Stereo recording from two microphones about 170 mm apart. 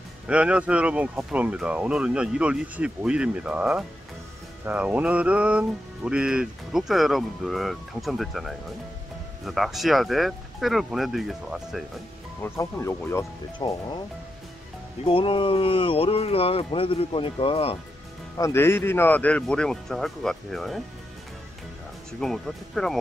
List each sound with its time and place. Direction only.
0.3 s speech: 5° right (ahead or behind)
4.6 s music: 10° right (ahead or behind)
12.4 s speech: 15° left (ahead or behind)
13.6 s speech: 25° left (ahead or behind)
15.0 s speech: 30° left (ahead or behind)
18.4 s speech: 15° left (ahead or behind)
22.2 s music: 5° left (ahead or behind)